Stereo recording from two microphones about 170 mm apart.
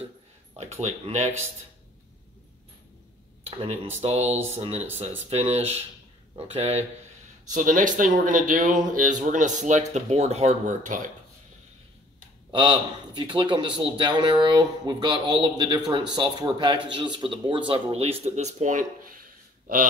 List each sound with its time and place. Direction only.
0.6 s speech: 40° right (ahead or behind)
3.4 s speech: 40° right (ahead or behind)
7.4 s speech: 50° right (ahead or behind)
12.4 s a man's voice: 25° right (ahead or behind); by 19.2 s 50° right (ahead or behind)